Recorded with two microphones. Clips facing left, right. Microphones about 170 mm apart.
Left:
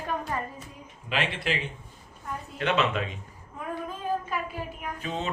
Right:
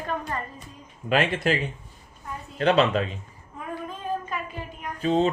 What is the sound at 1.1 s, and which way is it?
Speech, 45° right (ahead or behind).